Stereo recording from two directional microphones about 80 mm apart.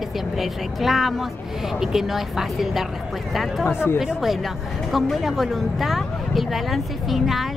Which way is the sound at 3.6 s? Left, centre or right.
Left.